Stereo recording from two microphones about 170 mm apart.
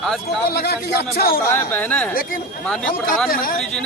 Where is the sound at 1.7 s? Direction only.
10° left (ahead or behind).